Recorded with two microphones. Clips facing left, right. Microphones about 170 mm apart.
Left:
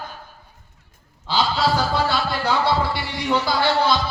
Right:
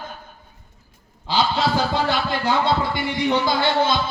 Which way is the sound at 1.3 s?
20° right (ahead or behind).